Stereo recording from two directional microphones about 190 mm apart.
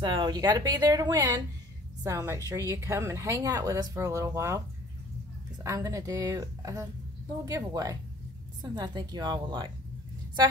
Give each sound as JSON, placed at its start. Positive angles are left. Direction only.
{"t": 0.0, "sound": "a woman's voice", "side_deg": -25}